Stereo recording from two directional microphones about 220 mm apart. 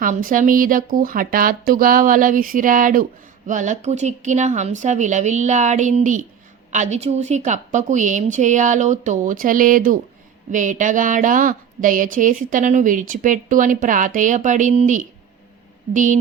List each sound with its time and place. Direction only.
0.0 s speech: 40° right (ahead or behind)